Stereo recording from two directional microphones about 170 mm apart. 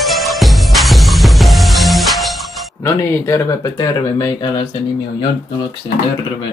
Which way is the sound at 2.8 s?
15° left (ahead or behind).